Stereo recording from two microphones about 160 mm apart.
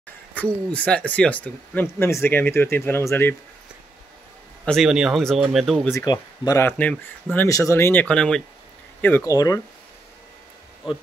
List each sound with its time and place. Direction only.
0.3 s speech: 10° left (ahead or behind)
4.6 s speech: centre (ahead or behind)
5.9 s speech: 25° left (ahead or behind)
6.6 s speech: 10° left (ahead or behind)
9.0 s speech: 15° left (ahead or behind)